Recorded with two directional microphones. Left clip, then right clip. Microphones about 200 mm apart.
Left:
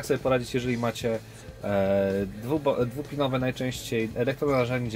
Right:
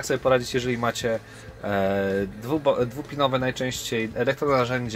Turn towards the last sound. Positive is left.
turn(degrees=-5)  # may be behind; listen again after turning